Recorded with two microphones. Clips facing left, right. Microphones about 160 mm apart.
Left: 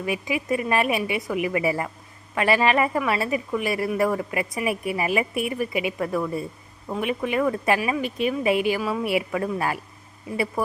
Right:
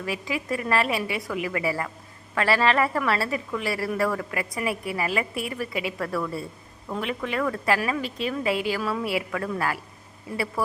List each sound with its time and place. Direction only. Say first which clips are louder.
0.0 s a woman's voice: left 3 dB; 20° left (ahead or behind)
7.8 s a man's voice: left 3 dB; 10° left (ahead or behind)